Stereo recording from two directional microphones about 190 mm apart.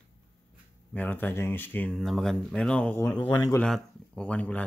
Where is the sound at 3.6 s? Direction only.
5° left (ahead or behind).